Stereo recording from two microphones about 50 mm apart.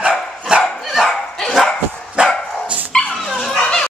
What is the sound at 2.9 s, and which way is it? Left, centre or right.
Dog, centre.